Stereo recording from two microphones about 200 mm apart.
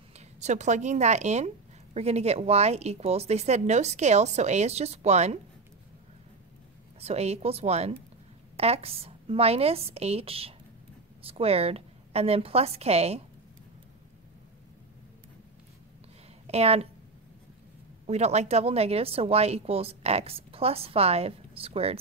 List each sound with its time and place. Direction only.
0.4 s a woman's voice: 35° right (ahead or behind)
7.0 s a woman's voice: 30° right (ahead or behind)
16.4 s a woman's voice: 30° right (ahead or behind)
18.0 s a woman's voice: 35° right (ahead or behind)